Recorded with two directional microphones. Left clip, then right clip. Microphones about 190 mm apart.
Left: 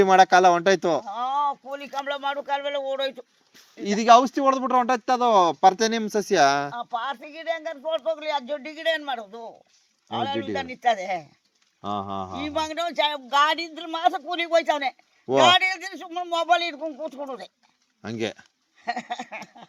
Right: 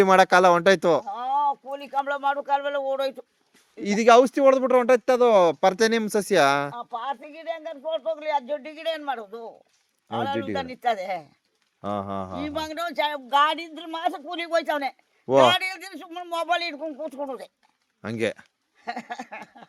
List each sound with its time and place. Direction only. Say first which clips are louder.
0.0 s speech: left 1 dB; 45° right (ahead or behind)
1.0 s speech: right 1 dB; 25° right (ahead or behind)
3.8 s speech: even; 45° right (ahead or behind); by 11.3 s 20° right (ahead or behind)
11.8 s speech: even; 45° right (ahead or behind)
12.5 s speech: left 5 dB; 20° right (ahead or behind)
18.0 s speech: right 3 dB; 40° right (ahead or behind)
18.9 s speech: left 3 dB; 20° right (ahead or behind)